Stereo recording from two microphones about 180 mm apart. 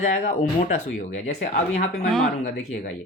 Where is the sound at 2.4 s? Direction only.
40° left (ahead or behind).